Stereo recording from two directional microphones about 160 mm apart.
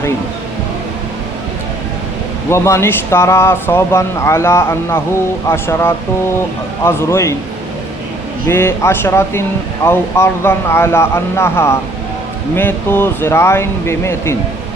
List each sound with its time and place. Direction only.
2.5 s speech: 15° left (ahead or behind)
8.4 s speech: 15° left (ahead or behind)